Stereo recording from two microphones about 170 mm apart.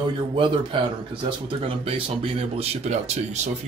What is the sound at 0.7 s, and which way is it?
Speech, 30° right (ahead or behind).